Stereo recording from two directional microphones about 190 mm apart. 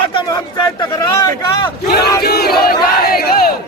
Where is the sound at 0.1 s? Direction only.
20° left (ahead or behind).